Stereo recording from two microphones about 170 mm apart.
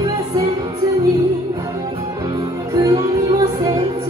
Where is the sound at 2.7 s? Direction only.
20° right (ahead or behind).